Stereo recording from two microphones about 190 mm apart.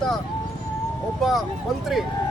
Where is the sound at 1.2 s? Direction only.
Centre (ahead or behind).